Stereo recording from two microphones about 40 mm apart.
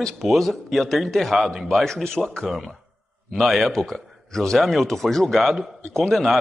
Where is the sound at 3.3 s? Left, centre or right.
Centre.